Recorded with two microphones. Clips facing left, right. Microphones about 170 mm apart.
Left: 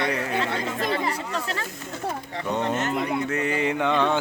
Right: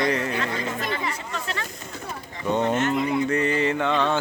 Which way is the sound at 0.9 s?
35° left (ahead or behind).